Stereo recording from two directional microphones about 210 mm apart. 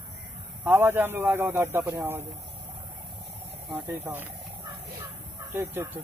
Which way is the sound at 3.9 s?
10° right (ahead or behind).